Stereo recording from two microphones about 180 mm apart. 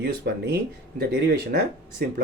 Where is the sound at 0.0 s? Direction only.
60° right (ahead or behind).